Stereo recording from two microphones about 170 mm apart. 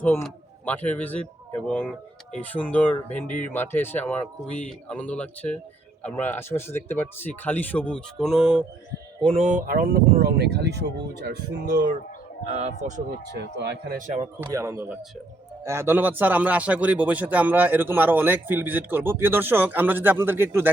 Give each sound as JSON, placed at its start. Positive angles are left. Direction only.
{"t": 0.2, "sound": "speech", "side_deg": 10}
{"t": 3.2, "sound": "speech", "side_deg": 50}
{"t": 3.5, "sound": "speech", "side_deg": 15}
{"t": 9.2, "sound": "speech", "side_deg": -40}
{"t": 12.5, "sound": "a man's voice", "side_deg": -40}
{"t": 13.4, "sound": "speech", "side_deg": -80}
{"t": 14.4, "sound": "a man's voice", "side_deg": -15}